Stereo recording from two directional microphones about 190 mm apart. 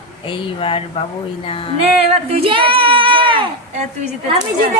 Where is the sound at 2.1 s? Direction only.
30° right (ahead or behind).